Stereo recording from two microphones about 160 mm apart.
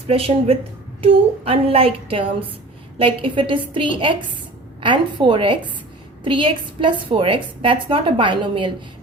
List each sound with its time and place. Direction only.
0.1 s a woman's voice: 35° right (ahead or behind)